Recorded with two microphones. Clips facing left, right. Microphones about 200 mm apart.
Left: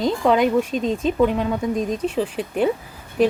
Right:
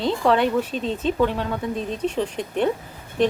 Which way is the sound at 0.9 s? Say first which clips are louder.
Left 2 dB; 5° left (ahead or behind).